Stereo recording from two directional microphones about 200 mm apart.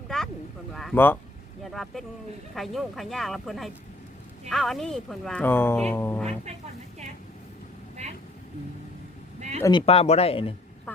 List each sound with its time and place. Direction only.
0.1 s a sound: 5° left (ahead or behind)
0.7 s speech: centre (ahead or behind)
9.6 s speech: 15° left (ahead or behind)
9.8 s speech: 30° left (ahead or behind)